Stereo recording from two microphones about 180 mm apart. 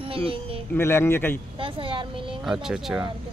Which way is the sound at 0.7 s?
15° left (ahead or behind).